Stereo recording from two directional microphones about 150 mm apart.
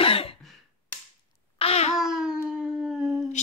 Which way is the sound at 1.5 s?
45° left (ahead or behind).